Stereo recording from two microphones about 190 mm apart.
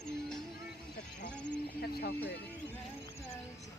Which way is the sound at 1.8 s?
55° left (ahead or behind).